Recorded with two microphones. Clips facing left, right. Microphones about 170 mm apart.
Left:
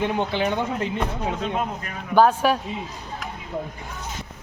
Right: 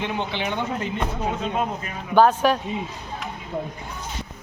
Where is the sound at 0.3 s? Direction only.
40° left (ahead or behind).